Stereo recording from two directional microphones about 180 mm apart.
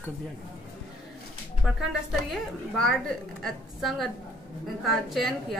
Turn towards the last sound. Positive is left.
turn(degrees=0)  # may be behind; listen again after turning